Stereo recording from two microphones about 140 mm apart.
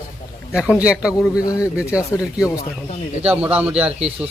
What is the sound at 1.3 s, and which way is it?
Speech, 25° left (ahead or behind).